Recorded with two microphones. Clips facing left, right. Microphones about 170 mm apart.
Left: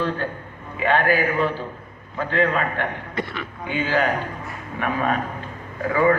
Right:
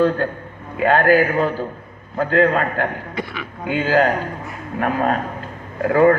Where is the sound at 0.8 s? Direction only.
45° right (ahead or behind).